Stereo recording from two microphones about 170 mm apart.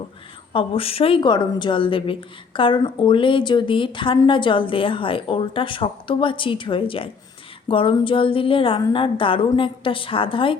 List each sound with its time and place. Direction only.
0.5 s a woman's voice: 35° left (ahead or behind)